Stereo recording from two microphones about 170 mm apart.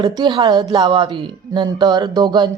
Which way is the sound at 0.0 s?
25° right (ahead or behind).